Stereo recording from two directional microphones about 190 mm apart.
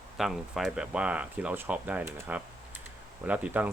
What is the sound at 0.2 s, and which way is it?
Speech, centre (ahead or behind).